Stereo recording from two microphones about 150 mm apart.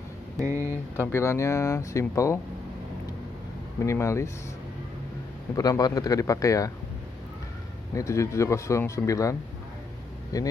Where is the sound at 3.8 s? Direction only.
20° left (ahead or behind).